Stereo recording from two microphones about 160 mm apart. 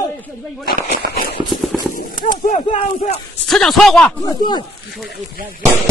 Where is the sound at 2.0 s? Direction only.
60° left (ahead or behind).